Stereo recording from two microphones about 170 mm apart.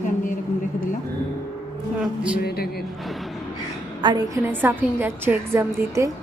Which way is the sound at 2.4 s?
65° left (ahead or behind).